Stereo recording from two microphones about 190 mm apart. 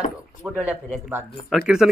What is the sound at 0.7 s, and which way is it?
Speech, 10° right (ahead or behind).